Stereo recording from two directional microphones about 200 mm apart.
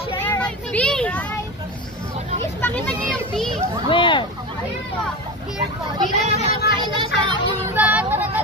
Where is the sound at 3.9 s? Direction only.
25° left (ahead or behind).